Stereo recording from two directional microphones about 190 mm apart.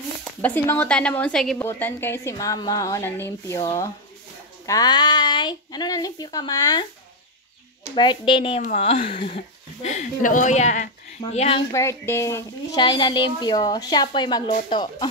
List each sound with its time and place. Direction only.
0.2 s a woman's voice: 10° left (ahead or behind)
7.9 s a woman's voice: 25° left (ahead or behind)
11.7 s a woman's voice: 15° left (ahead or behind)